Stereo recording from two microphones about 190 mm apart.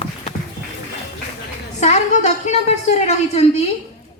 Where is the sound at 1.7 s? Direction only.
35° left (ahead or behind).